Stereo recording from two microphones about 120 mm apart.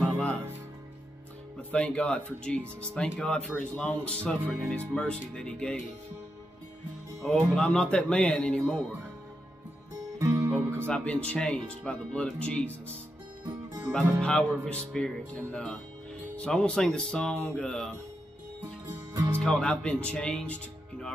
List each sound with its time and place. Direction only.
0.0 s music: 10° left (ahead or behind)
1.7 s speech: 10° left (ahead or behind)
7.2 s speech: 5° left (ahead or behind)
10.1 s music: 25° right (ahead or behind)
10.9 s speech: 10° left (ahead or behind)
14.2 s speech: 10° left (ahead or behind)
19.4 s speech: 5° left (ahead or behind)